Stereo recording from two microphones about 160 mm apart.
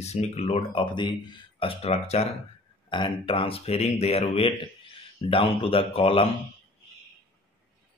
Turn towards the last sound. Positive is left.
turn(degrees=35)  # may be behind; listen again after turning